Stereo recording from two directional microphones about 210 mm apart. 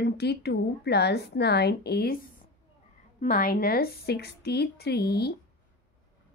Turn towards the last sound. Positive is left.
turn(degrees=50)  # may be behind; listen again after turning